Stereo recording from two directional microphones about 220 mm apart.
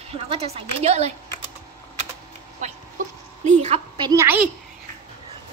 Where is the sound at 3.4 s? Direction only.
30° right (ahead or behind).